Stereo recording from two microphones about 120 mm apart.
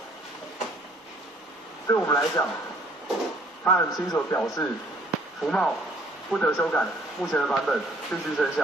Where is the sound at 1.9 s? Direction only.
20° left (ahead or behind).